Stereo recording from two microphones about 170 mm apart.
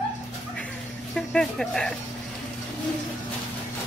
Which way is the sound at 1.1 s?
5° left (ahead or behind).